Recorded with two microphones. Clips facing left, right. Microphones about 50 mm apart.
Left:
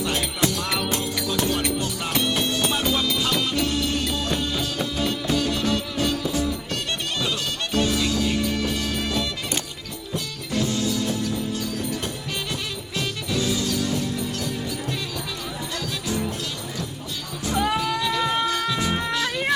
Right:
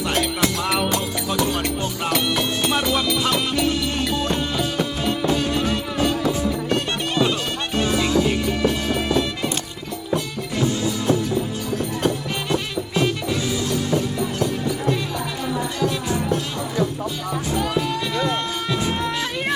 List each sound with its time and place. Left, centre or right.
2.6 s music: right
12.5 s music: right
17.7 s music: centre
18.2 s a sound: centre
19.1 s music: centre